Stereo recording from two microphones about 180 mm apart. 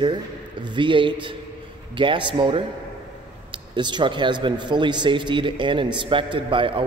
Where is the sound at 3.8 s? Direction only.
25° right (ahead or behind).